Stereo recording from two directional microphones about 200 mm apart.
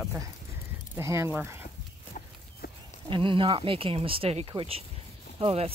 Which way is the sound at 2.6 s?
50° left (ahead or behind).